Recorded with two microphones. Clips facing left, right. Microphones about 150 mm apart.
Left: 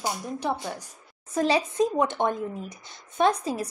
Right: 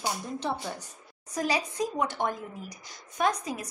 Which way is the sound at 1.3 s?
25° left (ahead or behind).